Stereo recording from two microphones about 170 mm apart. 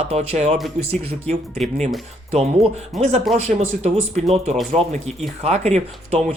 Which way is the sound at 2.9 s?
Centre (ahead or behind).